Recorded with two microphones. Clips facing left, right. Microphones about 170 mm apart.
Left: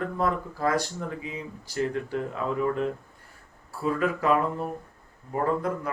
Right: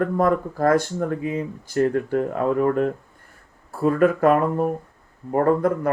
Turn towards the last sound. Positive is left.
turn(degrees=-50)  # may be behind; listen again after turning